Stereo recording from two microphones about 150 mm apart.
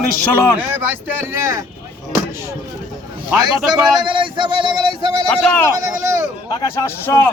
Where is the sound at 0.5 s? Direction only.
15° right (ahead or behind).